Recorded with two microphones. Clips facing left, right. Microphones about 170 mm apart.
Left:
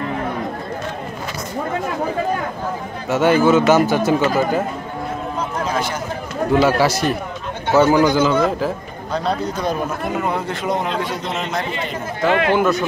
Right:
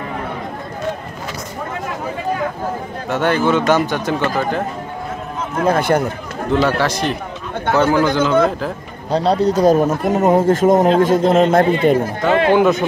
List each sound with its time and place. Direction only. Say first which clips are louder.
3.1 s a man's voice: left 2 dB; 5° left (ahead or behind)
5.6 s a man's voice: right 10 dB; 55° right (ahead or behind)
6.8 s a man's voice: left 1 dB; 5° left (ahead or behind)
9.1 s a man's voice: right 7 dB; 35° right (ahead or behind); by 12.0 s 50° right (ahead or behind)
12.3 s speech: right 2 dB; 35° right (ahead or behind)
12.5 s speech: right 4 dB; 15° right (ahead or behind)